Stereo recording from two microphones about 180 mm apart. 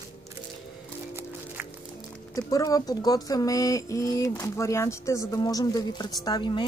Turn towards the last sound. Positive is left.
turn(degrees=25)  # may be behind; listen again after turning